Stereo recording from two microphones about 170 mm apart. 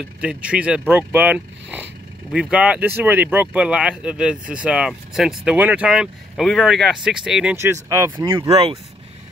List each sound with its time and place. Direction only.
0.2 s speech: 5° right (ahead or behind)
7.5 s speech: 15° right (ahead or behind)
8.5 s speech: 30° right (ahead or behind)